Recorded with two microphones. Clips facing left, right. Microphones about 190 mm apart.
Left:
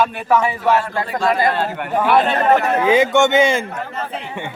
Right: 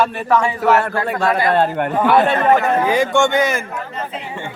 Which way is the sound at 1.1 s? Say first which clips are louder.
Even; 55° right (ahead or behind).